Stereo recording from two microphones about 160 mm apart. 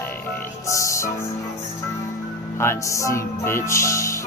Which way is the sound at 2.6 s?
15° left (ahead or behind).